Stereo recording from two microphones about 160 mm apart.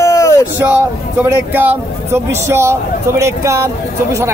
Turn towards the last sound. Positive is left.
turn(degrees=-20)  # may be behind; listen again after turning